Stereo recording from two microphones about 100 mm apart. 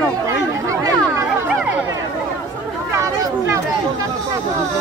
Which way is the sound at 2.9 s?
30° right (ahead or behind).